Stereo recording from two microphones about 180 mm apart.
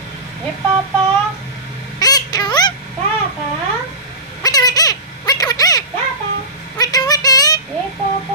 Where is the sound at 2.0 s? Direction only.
20° left (ahead or behind).